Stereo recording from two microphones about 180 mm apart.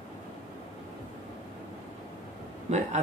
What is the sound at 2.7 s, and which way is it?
Speech, 35° right (ahead or behind).